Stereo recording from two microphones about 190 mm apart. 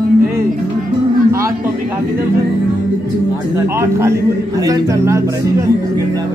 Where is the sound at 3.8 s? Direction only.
15° right (ahead or behind).